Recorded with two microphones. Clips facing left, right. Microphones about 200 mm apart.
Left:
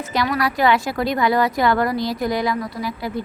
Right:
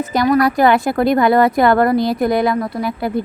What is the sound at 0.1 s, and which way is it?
A woman's voice, 50° right (ahead or behind).